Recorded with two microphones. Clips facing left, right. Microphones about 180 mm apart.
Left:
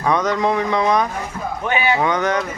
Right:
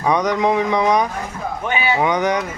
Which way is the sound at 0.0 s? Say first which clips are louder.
Right 1 dB; 15° right (ahead or behind).